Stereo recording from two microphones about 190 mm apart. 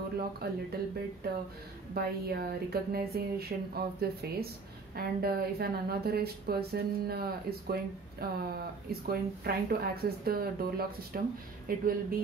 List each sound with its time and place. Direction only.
0.4 s a woman's voice: 55° right (ahead or behind)